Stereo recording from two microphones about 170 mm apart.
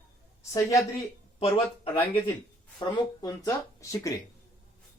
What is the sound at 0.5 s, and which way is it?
Speech, 20° left (ahead or behind).